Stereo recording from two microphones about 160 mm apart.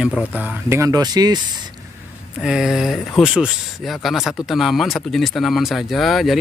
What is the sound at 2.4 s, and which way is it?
Speech, 5° right (ahead or behind).